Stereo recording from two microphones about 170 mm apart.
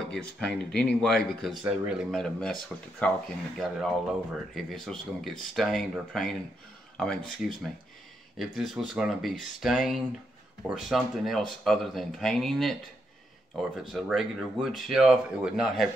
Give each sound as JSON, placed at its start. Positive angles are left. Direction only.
{"t": 0.1, "sound": "speech", "side_deg": 5}